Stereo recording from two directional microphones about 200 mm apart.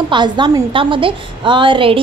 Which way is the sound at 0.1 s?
25° right (ahead or behind).